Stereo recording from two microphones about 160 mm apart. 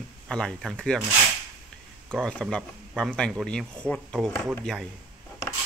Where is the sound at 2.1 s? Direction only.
5° left (ahead or behind).